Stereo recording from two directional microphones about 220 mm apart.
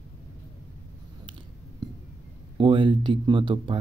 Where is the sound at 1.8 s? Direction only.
20° right (ahead or behind).